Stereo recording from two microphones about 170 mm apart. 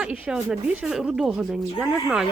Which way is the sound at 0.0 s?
5° right (ahead or behind).